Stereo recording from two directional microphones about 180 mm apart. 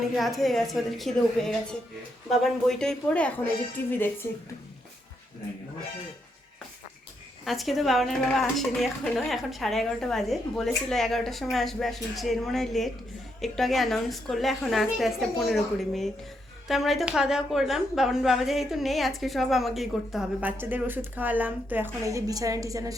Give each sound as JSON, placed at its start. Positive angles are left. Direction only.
{"t": 0.2, "sound": "a woman's voice", "side_deg": 0}
{"t": 7.4, "sound": "a woman's voice", "side_deg": 0}